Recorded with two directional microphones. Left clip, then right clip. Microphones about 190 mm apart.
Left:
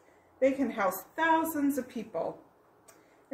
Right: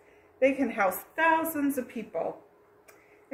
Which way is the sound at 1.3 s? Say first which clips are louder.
Right 1 dB; centre (ahead or behind).